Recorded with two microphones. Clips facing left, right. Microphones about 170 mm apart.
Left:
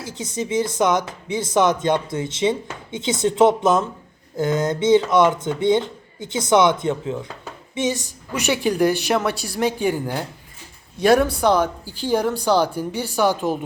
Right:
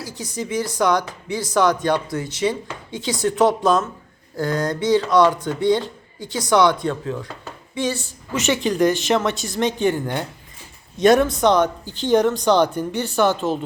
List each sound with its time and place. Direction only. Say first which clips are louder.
0.0 s speech: left 2 dB; 25° left (ahead or behind)